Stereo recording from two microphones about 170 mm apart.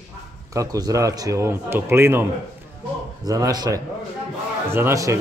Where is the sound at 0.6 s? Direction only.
20° right (ahead or behind).